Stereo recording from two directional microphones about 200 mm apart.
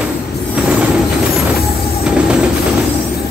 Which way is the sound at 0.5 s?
5° right (ahead or behind).